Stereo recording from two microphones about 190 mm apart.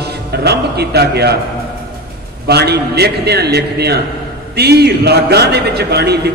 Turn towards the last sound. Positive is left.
turn(degrees=-60)  # may be behind; listen again after turning